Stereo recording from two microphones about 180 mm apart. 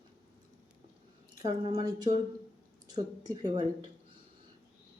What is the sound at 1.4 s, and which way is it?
A woman's voice, 20° right (ahead or behind).